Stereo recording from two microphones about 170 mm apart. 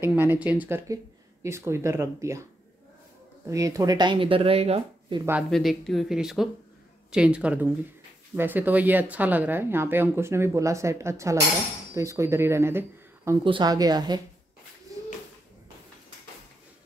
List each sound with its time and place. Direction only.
0.0 s speech: 10° right (ahead or behind)
3.4 s speech: 20° right (ahead or behind); by 5.2 s 35° right (ahead or behind)
5.5 s speech: centre (ahead or behind); by 13.4 s 15° right (ahead or behind)
13.4 s speech: 25° right (ahead or behind)
14.9 s a sound: 20° right (ahead or behind)